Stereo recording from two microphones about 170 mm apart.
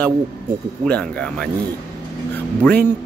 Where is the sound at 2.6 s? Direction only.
5° left (ahead or behind).